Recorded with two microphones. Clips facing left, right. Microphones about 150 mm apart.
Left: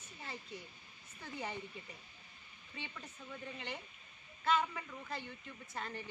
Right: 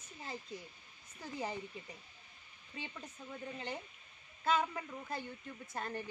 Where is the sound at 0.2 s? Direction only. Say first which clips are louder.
Right 2 dB; 35° right (ahead or behind).